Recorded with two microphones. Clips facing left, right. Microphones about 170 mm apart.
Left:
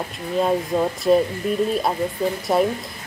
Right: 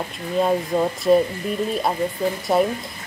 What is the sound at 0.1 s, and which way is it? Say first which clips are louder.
A woman's voice: even; centre (ahead or behind).